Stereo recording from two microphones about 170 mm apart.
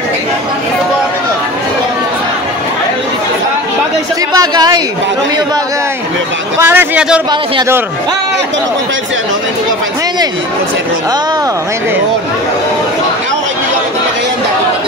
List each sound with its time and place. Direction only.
4.4 s speech: 25° right (ahead or behind)
6.6 s a man's voice: 15° right (ahead or behind)